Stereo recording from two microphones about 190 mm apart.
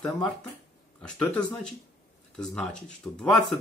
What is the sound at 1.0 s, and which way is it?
Speech, 5° left (ahead or behind).